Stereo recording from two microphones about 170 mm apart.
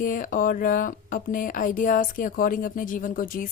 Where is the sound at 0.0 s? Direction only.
55° left (ahead or behind).